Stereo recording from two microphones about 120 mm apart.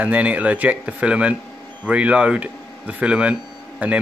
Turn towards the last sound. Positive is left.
turn(degrees=-10)  # may be behind; listen again after turning